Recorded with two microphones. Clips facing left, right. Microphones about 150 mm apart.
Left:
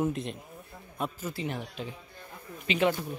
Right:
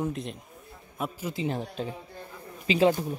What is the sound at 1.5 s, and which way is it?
Speech, 35° right (ahead or behind).